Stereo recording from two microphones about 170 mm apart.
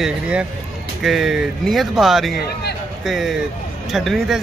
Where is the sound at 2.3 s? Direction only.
70° left (ahead or behind).